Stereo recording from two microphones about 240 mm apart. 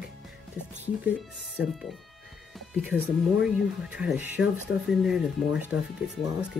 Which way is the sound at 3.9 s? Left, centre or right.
Centre.